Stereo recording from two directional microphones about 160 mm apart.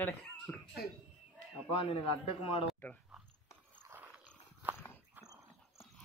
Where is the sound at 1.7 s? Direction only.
35° left (ahead or behind).